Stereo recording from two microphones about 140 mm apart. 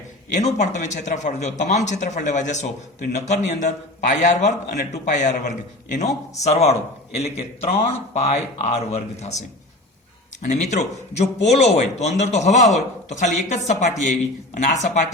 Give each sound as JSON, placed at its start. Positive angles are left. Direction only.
{"t": 0.3, "sound": "a man's voice", "side_deg": 60}
{"t": 10.4, "sound": "a man's voice", "side_deg": 55}